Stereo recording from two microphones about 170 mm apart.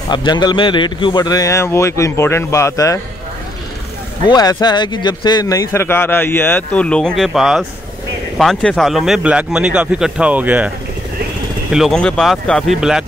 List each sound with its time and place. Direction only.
0.1 s a man's voice: 25° left (ahead or behind)
4.3 s a man's voice: 20° left (ahead or behind); by 10.7 s 10° right (ahead or behind)
11.7 s a man's voice: centre (ahead or behind)